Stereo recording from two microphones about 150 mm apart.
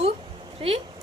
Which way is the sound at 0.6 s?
40° right (ahead or behind).